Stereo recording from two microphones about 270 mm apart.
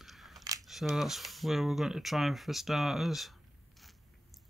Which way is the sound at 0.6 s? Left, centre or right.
Centre.